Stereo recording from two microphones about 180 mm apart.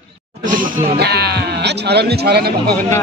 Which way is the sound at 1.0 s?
65° right (ahead or behind).